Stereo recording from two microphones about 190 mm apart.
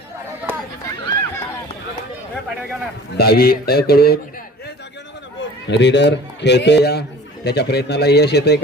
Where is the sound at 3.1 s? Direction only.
55° left (ahead or behind).